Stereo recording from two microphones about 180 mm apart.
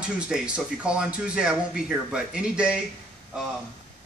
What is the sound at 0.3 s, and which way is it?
Speech, centre (ahead or behind).